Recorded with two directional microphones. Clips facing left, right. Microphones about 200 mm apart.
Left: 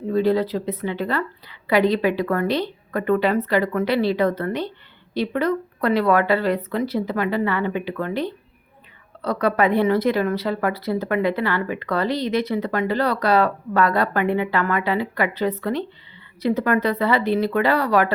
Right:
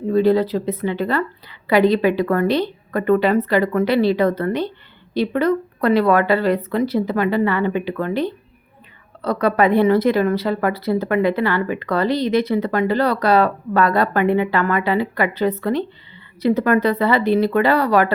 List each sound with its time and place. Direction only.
0.1 s a woman's voice: 35° right (ahead or behind)
2.5 s a woman's voice: 30° right (ahead or behind)
3.8 s a woman's voice: 30° right (ahead or behind)
4.4 s a woman's voice: 40° right (ahead or behind)
9.2 s a woman's voice: 40° right (ahead or behind)